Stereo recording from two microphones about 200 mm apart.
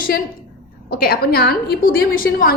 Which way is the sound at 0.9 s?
50° left (ahead or behind).